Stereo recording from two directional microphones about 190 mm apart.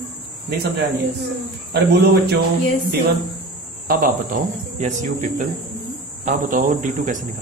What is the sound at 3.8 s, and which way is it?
Speech, 45° right (ahead or behind).